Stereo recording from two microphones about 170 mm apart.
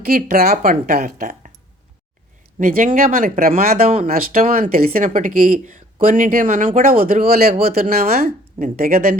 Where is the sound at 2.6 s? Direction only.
55° right (ahead or behind).